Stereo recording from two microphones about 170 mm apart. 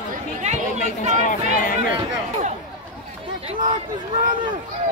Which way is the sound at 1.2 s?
55° left (ahead or behind).